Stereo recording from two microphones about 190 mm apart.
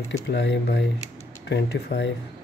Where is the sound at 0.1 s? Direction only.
65° left (ahead or behind).